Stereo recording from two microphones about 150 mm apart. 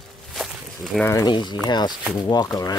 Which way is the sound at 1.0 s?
20° left (ahead or behind).